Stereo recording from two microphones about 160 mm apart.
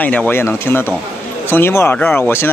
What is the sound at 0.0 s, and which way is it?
A man's voice, 10° left (ahead or behind).